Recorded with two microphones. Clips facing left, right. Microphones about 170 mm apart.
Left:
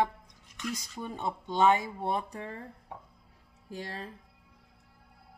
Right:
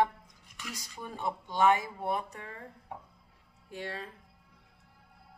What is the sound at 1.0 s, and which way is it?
Speech, 20° left (ahead or behind).